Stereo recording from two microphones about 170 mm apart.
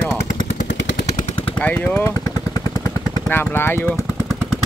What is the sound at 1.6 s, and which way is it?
Speech, 10° left (ahead or behind).